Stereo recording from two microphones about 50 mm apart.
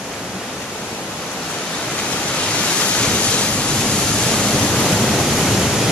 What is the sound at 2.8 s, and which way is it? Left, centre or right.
Waves, left.